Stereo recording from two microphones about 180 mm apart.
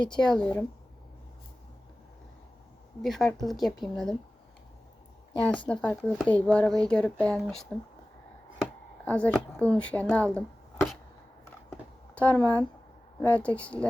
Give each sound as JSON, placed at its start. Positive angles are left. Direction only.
{"t": 0.2, "sound": "speech", "side_deg": 5}
{"t": 3.0, "sound": "speech", "side_deg": 0}
{"t": 5.6, "sound": "speech", "side_deg": 5}
{"t": 8.6, "sound": "a sound", "side_deg": 10}
{"t": 9.7, "sound": "speech", "side_deg": 5}
{"t": 12.1, "sound": "speech", "side_deg": 5}